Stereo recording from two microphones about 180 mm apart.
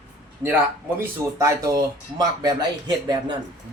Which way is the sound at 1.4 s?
20° right (ahead or behind).